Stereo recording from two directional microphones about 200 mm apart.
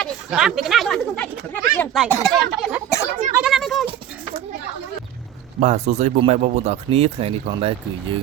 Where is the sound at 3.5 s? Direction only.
Centre (ahead or behind).